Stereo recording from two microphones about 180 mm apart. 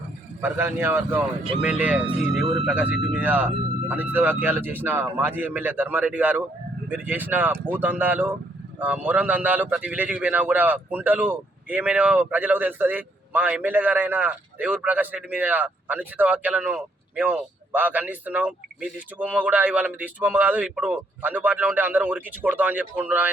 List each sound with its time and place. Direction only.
0.4 s speech: 10° right (ahead or behind)